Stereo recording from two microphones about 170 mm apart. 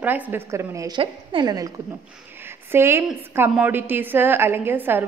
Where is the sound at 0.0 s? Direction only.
10° right (ahead or behind).